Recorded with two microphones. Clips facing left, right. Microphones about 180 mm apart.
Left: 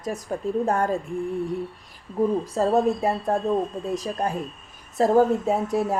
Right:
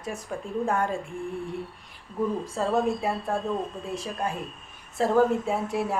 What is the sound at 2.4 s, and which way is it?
A woman's voice, 40° left (ahead or behind).